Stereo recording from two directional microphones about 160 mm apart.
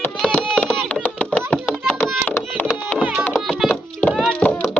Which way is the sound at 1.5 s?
5° left (ahead or behind).